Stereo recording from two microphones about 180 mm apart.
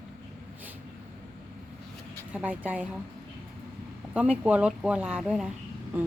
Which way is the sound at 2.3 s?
10° right (ahead or behind).